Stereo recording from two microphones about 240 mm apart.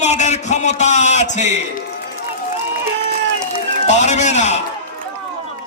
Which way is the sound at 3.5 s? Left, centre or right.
Left.